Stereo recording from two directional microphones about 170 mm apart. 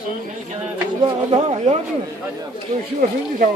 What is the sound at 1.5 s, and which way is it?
Speech, 40° right (ahead or behind).